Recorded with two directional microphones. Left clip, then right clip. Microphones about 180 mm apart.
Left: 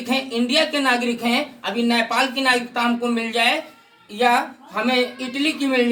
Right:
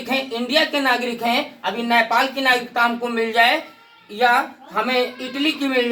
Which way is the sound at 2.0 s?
20° left (ahead or behind).